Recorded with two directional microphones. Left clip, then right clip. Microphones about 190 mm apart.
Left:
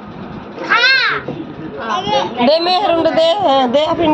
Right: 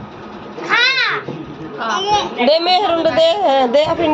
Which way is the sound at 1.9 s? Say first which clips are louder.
Left 1 dB; 5° right (ahead or behind).